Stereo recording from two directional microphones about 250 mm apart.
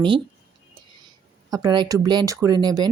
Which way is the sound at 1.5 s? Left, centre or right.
Centre.